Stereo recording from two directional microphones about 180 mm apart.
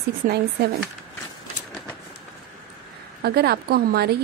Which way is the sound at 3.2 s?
60° right (ahead or behind).